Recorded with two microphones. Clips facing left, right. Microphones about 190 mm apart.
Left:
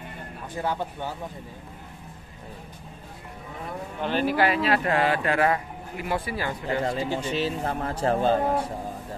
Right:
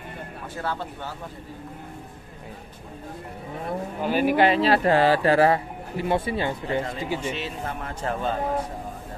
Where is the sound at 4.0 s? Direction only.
10° right (ahead or behind).